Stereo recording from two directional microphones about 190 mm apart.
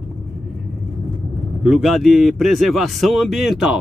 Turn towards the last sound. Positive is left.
turn(degrees=0)  # may be behind; listen again after turning